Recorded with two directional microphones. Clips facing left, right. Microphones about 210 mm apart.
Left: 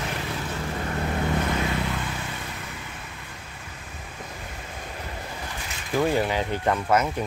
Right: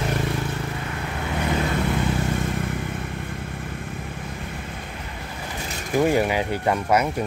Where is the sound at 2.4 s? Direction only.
50° right (ahead or behind).